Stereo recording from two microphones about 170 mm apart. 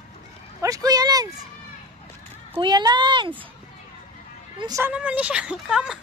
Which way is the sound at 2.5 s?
25° right (ahead or behind).